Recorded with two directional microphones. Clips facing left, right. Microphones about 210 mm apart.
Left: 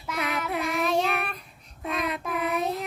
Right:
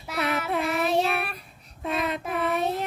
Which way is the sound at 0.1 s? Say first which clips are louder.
Right 2 dB; 30° right (ahead or behind).